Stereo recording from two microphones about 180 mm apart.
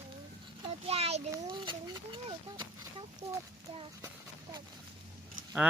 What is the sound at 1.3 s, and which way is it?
Speech, 25° right (ahead or behind).